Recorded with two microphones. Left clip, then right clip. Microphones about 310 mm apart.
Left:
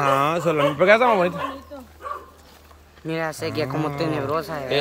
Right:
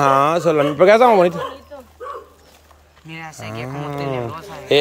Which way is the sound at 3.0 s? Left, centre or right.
Centre.